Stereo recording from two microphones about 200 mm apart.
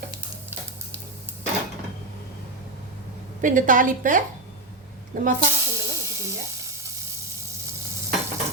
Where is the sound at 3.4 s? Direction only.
40° right (ahead or behind).